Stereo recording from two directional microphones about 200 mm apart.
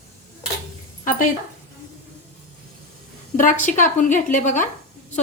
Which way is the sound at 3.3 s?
40° left (ahead or behind).